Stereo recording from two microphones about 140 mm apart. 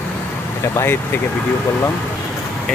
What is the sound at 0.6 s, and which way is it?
Speech, 15° left (ahead or behind).